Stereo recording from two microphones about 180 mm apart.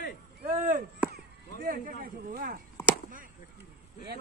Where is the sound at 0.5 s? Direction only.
45° right (ahead or behind).